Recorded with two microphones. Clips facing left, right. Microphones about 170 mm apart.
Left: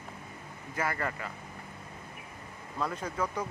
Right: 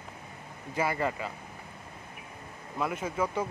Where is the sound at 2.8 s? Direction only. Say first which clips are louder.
Right 3 dB; 15° right (ahead or behind).